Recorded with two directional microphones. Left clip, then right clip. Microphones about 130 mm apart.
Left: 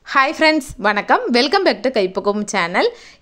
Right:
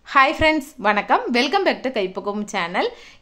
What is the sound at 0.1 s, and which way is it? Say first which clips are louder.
A woman's voice: left 2 dB; 30° left (ahead or behind).